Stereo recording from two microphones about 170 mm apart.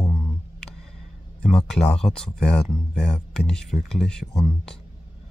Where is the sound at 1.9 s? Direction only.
5° left (ahead or behind).